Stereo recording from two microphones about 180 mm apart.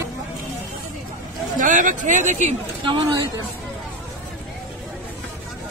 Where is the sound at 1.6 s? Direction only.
45° right (ahead or behind).